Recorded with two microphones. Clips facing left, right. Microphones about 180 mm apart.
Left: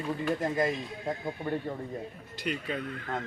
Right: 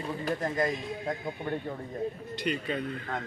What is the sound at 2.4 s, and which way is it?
Speech, centre (ahead or behind).